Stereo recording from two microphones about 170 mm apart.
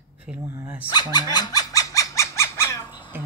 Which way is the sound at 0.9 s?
25° left (ahead or behind).